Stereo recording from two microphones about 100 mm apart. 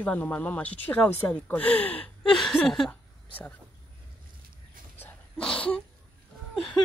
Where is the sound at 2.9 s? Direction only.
15° left (ahead or behind).